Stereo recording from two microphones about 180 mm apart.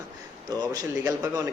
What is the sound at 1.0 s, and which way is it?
Speech, 20° right (ahead or behind).